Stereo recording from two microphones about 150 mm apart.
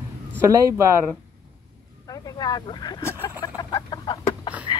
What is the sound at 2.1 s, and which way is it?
Chicken, 25° left (ahead or behind).